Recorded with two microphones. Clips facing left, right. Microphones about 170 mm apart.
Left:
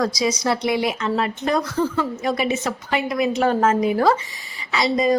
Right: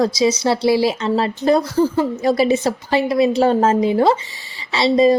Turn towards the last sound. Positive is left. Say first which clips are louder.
# right 6 dB
turn(degrees=-30)  # may be behind; listen again after turning